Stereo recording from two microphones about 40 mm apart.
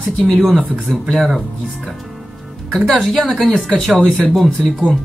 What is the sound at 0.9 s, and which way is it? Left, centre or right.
Speech, centre.